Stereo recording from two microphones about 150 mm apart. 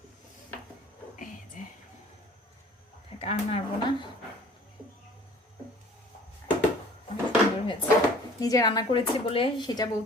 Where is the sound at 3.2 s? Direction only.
40° left (ahead or behind).